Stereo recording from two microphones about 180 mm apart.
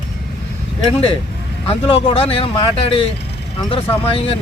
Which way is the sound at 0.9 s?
30° left (ahead or behind).